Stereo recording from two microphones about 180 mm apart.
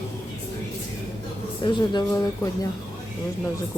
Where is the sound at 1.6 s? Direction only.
25° left (ahead or behind).